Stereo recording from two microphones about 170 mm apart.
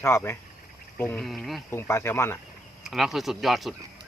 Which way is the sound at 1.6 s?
15° left (ahead or behind).